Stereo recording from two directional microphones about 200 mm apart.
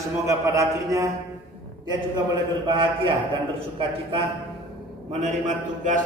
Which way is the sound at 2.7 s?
25° right (ahead or behind).